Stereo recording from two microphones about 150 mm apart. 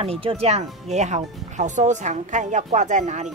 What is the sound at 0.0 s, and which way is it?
Speech, 40° right (ahead or behind).